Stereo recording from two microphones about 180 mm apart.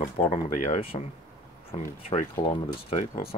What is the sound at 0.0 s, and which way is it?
Speech, 35° left (ahead or behind).